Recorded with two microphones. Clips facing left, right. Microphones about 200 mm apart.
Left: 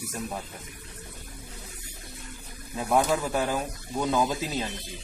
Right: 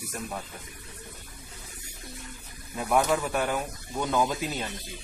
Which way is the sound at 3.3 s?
30° left (ahead or behind).